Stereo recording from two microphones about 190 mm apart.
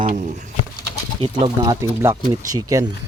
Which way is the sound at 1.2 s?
25° right (ahead or behind).